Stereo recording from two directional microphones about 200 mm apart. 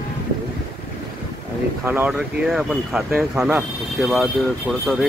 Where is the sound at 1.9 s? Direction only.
10° right (ahead or behind).